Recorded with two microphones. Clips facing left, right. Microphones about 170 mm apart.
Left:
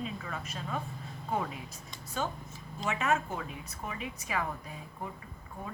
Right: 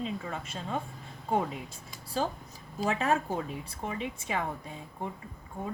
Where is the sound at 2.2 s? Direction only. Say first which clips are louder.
Right 1 dB; 30° right (ahead or behind).